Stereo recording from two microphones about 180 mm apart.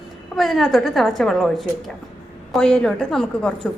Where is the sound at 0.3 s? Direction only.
Centre (ahead or behind).